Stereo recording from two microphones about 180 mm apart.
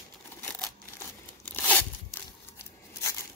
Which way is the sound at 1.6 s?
10° left (ahead or behind).